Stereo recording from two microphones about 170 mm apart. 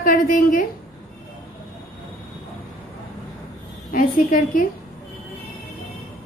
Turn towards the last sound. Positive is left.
turn(degrees=55)  # may be behind; listen again after turning